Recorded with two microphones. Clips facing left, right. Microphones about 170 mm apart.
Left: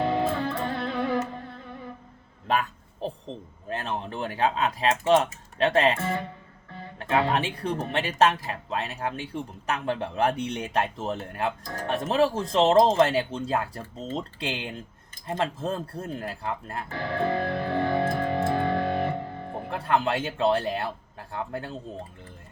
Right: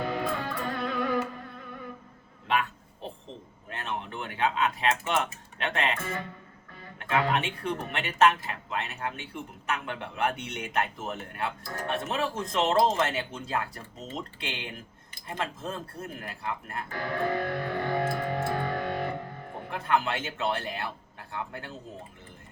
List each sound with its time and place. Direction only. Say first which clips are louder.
0.0 s music: left 5 dB; 25° left (ahead or behind)
2.5 s a sound: left 2 dB; 40° left (ahead or behind)
3.7 s speech: left 4 dB; 35° left (ahead or behind)